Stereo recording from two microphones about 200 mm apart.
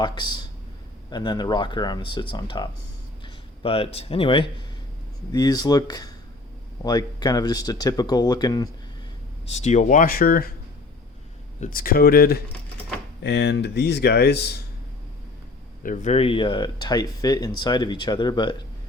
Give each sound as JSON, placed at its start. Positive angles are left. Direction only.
{"t": 0.0, "sound": "speech", "side_deg": 20}
{"t": 9.5, "sound": "speech", "side_deg": 35}
{"t": 11.6, "sound": "speech", "side_deg": 45}
{"t": 15.8, "sound": "speech", "side_deg": 40}